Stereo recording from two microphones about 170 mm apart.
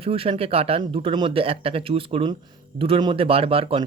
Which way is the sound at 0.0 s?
35° right (ahead or behind).